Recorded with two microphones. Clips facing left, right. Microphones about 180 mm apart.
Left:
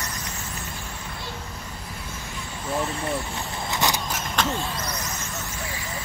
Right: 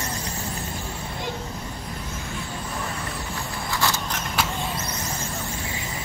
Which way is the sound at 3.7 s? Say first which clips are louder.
Left 1 dB; 20° left (ahead or behind).